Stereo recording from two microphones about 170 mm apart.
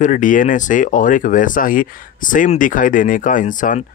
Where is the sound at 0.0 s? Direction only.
50° left (ahead or behind).